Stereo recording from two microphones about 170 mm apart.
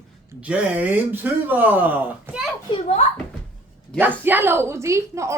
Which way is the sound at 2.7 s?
40° left (ahead or behind).